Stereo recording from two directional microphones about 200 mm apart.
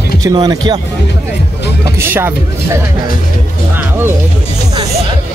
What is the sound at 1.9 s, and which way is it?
Speech, 10° right (ahead or behind).